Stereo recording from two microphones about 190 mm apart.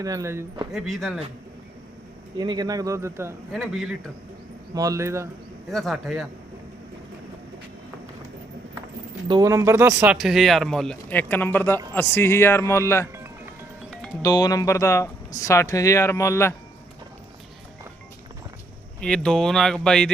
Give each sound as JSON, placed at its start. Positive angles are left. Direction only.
{"t": 0.0, "sound": "speech", "side_deg": -15}
{"t": 0.7, "sound": "speech", "side_deg": 0}
{"t": 2.4, "sound": "speech", "side_deg": -20}
{"t": 3.5, "sound": "speech", "side_deg": 0}
{"t": 4.7, "sound": "speech", "side_deg": -20}
{"t": 5.7, "sound": "speech", "side_deg": 0}
{"t": 9.2, "sound": "speech", "side_deg": -20}
{"t": 14.2, "sound": "speech", "side_deg": 20}
{"t": 18.9, "sound": "speech", "side_deg": 5}